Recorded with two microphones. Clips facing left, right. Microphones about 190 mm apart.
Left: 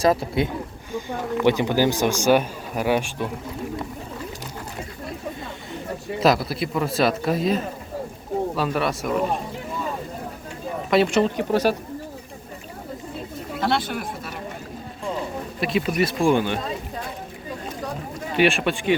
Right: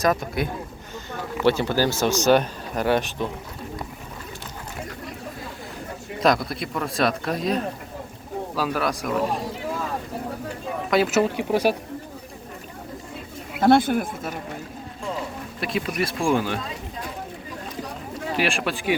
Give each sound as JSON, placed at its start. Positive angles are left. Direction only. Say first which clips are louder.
{"t": 0.0, "sound": "a man's voice", "louder": "left 3 dB", "side_deg": 25}
{"t": 1.5, "sound": "speech", "louder": "left 1 dB", "side_deg": 15}
{"t": 6.1, "sound": "speech", "louder": "left 1 dB", "side_deg": 5}
{"t": 10.9, "sound": "speech", "louder": "left 2 dB", "side_deg": -5}
{"t": 13.6, "sound": "speech", "louder": "right 7 dB", "side_deg": -50}
{"t": 15.6, "sound": "speech", "louder": "left 4 dB", "side_deg": 0}
{"t": 18.3, "sound": "speech", "louder": "left 6 dB", "side_deg": 0}